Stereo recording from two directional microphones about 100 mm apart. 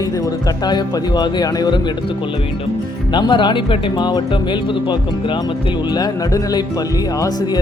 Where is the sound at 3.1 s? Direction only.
50° left (ahead or behind).